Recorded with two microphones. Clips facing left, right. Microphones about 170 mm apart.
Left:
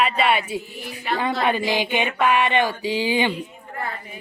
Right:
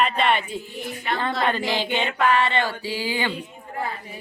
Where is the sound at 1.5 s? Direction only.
15° left (ahead or behind).